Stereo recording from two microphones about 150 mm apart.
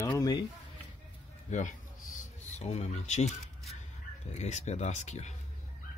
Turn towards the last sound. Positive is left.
turn(degrees=50)  # may be behind; listen again after turning